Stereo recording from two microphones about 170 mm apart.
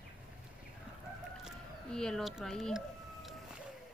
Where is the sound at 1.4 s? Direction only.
5° left (ahead or behind).